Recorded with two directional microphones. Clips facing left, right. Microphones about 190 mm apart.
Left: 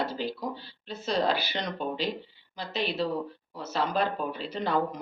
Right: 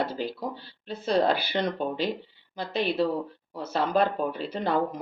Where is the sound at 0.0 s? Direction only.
50° right (ahead or behind).